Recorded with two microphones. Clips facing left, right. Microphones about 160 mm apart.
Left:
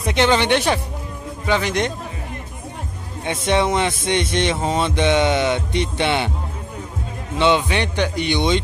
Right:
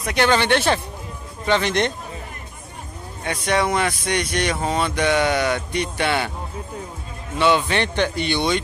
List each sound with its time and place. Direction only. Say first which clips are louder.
0.0 s a man's voice: left 2 dB; 20° left (ahead or behind)
3.3 s speech: left 2 dB; 25° left (ahead or behind)
7.3 s a man's voice: left 1 dB; 20° left (ahead or behind)